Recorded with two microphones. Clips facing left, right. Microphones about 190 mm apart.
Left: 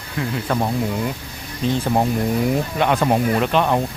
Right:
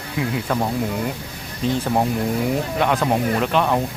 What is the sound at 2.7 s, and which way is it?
Speech, centre (ahead or behind).